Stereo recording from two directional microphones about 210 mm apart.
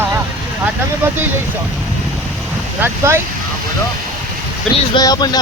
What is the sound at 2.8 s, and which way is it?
Speech, 10° right (ahead or behind).